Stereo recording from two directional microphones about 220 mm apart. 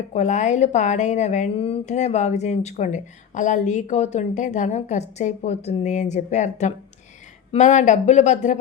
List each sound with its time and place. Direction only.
0.1 s a woman's voice: 30° left (ahead or behind)